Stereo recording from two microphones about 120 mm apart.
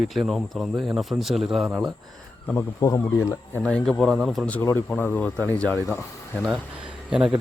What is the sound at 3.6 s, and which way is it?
Speech, 10° left (ahead or behind).